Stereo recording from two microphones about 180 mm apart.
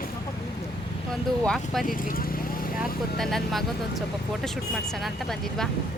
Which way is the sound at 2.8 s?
Centre (ahead or behind).